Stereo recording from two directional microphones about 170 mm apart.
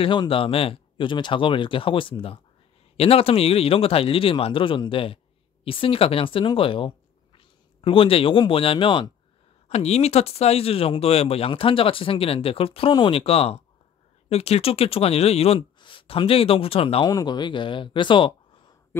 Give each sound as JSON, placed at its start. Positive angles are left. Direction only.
{"t": 0.0, "sound": "speech", "side_deg": 30}